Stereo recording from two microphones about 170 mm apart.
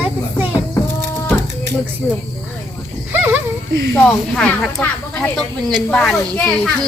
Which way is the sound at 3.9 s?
5° left (ahead or behind).